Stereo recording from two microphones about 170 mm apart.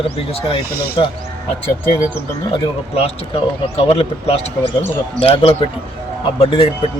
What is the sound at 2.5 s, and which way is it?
Speech, 35° left (ahead or behind).